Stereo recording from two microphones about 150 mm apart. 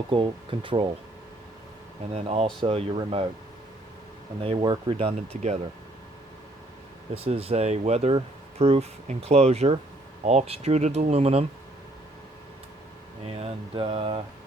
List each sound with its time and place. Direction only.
0.1 s speech: 35° right (ahead or behind)
2.1 s speech: 45° right (ahead or behind)
4.4 s speech: 35° right (ahead or behind)
5.1 s speech: 50° right (ahead or behind)
7.1 s speech: 40° right (ahead or behind)
13.2 s speech: 40° right (ahead or behind)